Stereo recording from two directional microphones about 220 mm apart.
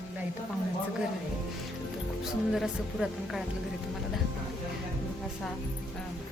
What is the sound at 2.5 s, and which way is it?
Speech, centre (ahead or behind).